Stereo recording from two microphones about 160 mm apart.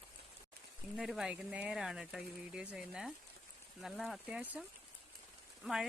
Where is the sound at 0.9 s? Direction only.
Centre (ahead or behind).